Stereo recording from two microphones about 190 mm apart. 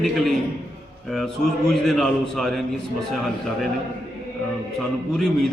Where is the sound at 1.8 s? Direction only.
Centre (ahead or behind).